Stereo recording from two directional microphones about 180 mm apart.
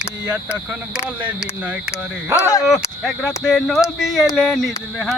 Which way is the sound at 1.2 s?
10° right (ahead or behind).